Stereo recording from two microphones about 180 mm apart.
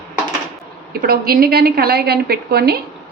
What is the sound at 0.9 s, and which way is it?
A woman's voice, 55° right (ahead or behind).